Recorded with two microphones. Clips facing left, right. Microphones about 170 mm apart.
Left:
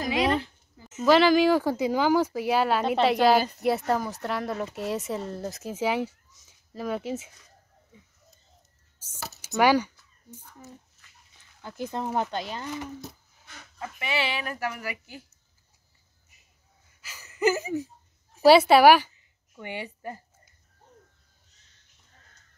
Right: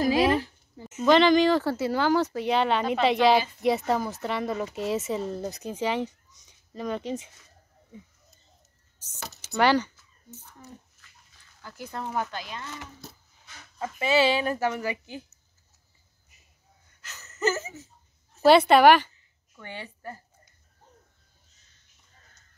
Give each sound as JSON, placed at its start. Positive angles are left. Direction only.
{"t": 1.0, "sound": "speech", "side_deg": 5}
{"t": 3.3, "sound": "speech", "side_deg": 40}
{"t": 3.6, "sound": "speech", "side_deg": 0}
{"t": 9.0, "sound": "a sound", "side_deg": 10}
{"t": 11.6, "sound": "speech", "side_deg": 20}
{"t": 12.6, "sound": "speech", "side_deg": 10}
{"t": 13.7, "sound": "speech", "side_deg": -30}
{"t": 17.0, "sound": "a sound", "side_deg": 10}
{"t": 18.3, "sound": "a woman's voice", "side_deg": 10}